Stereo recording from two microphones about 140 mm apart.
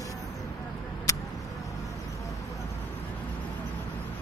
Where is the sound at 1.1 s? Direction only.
20° left (ahead or behind).